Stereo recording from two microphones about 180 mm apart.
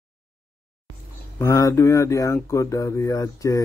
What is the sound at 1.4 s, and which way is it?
Speech, 15° left (ahead or behind).